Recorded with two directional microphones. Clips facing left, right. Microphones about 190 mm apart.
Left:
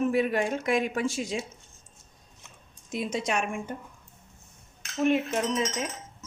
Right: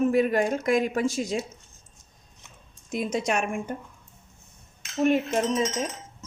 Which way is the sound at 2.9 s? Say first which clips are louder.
Right 3 dB; 45° right (ahead or behind).